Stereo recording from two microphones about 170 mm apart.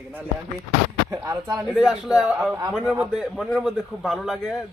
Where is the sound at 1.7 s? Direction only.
5° right (ahead or behind).